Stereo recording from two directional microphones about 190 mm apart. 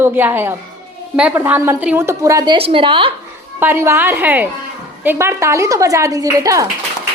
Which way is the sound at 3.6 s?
10° right (ahead or behind).